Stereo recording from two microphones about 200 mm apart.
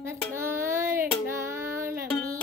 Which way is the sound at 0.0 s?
10° right (ahead or behind).